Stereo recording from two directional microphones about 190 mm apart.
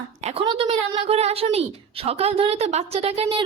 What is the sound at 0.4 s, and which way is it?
A woman's voice, 30° right (ahead or behind).